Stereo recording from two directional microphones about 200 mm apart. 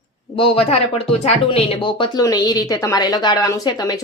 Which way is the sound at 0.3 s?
30° left (ahead or behind).